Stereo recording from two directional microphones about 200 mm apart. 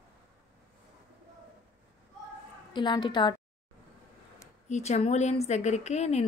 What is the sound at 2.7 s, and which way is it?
Speech, 20° left (ahead or behind).